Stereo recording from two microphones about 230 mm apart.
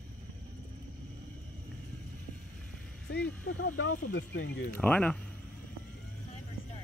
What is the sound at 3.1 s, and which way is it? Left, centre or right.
Speech, left.